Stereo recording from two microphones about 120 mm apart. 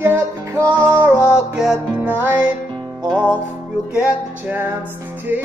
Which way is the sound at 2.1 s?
15° right (ahead or behind).